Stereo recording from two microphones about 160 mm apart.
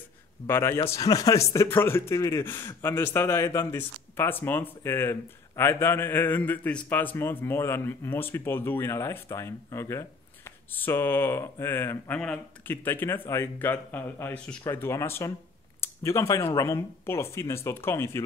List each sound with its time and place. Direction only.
0.5 s speech: 15° left (ahead or behind)